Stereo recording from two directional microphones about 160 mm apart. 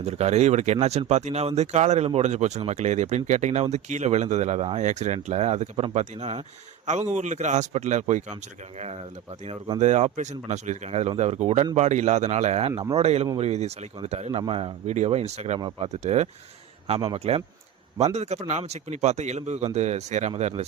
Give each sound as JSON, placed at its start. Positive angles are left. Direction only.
{"t": 0.0, "sound": "speech", "side_deg": -40}
{"t": 9.5, "sound": "speech", "side_deg": -30}
{"t": 9.8, "sound": "speech", "side_deg": -45}
{"t": 12.7, "sound": "speech", "side_deg": -20}
{"t": 13.0, "sound": "speech", "side_deg": -40}